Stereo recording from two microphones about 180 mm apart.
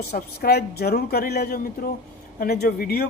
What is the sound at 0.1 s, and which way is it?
A woman's voice, 60° left (ahead or behind).